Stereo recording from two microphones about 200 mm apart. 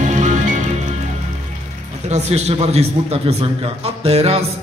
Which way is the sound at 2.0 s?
35° right (ahead or behind).